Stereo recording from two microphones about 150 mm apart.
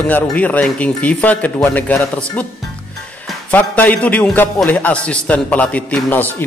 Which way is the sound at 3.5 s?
10° left (ahead or behind).